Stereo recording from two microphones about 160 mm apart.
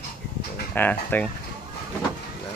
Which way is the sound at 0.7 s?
10° left (ahead or behind).